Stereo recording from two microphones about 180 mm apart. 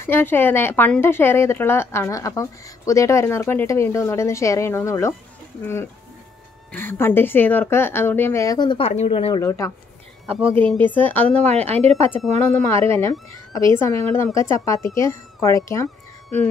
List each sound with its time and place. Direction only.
0.0 s speech: 10° left (ahead or behind)
6.7 s speech: 10° left (ahead or behind); by 9.4 s 30° left (ahead or behind)
9.4 s speech: 15° left (ahead or behind)
11.4 s a woman's voice: 35° right (ahead or behind)
12.5 s speech: 15° left (ahead or behind)